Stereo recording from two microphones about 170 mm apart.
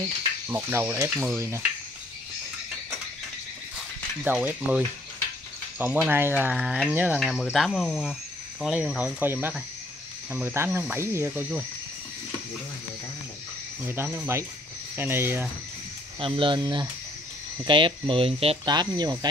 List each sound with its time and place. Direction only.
0.5 s speech: 15° right (ahead or behind)
4.2 s speech: 10° right (ahead or behind)
13.8 s speech: 15° right (ahead or behind)
16.2 s speech: 30° right (ahead or behind)